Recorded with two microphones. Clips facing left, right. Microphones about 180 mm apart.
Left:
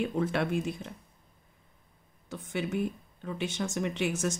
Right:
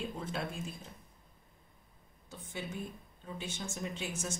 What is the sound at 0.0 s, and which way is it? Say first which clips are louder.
Speech: left 9 dB; 70° left (ahead or behind).